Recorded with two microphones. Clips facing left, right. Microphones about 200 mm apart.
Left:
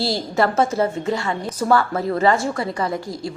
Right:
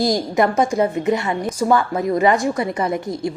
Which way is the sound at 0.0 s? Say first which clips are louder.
Right 3 dB; 15° right (ahead or behind).